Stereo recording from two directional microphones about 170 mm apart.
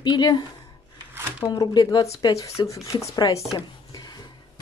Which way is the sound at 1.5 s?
25° left (ahead or behind).